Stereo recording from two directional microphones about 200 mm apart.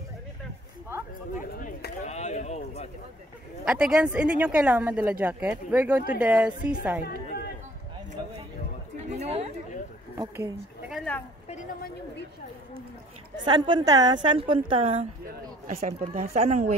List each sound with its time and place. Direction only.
1.3 s a sound: 40° left (ahead or behind)
3.6 s a woman's voice: 5° right (ahead or behind)
9.1 s chatter: 30° right (ahead or behind)
10.1 s speech: 15° right (ahead or behind)
10.9 s speech: 5° left (ahead or behind)
13.4 s a woman's voice: 20° right (ahead or behind)